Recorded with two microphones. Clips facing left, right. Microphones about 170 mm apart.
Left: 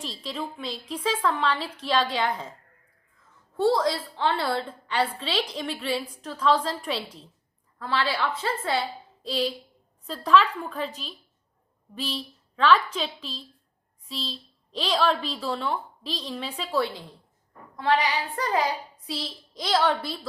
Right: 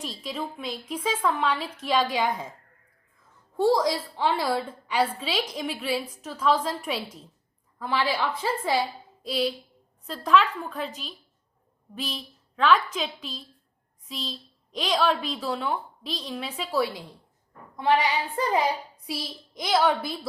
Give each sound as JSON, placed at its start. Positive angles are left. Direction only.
{"t": 0.0, "sound": "a woman's voice", "side_deg": -10}
{"t": 3.6, "sound": "a woman's voice", "side_deg": -15}
{"t": 11.9, "sound": "a woman's voice", "side_deg": -5}
{"t": 17.7, "sound": "child singing", "side_deg": -20}
{"t": 19.5, "sound": "a woman's voice", "side_deg": -10}